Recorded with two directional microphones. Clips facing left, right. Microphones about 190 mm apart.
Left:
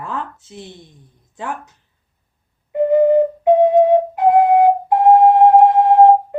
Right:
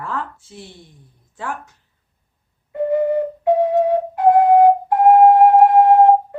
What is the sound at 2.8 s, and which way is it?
Flute, 20° left (ahead or behind).